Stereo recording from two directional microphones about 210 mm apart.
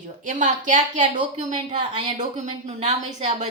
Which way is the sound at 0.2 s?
35° right (ahead or behind).